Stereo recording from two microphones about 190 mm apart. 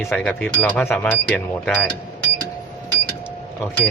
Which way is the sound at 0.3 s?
10° left (ahead or behind).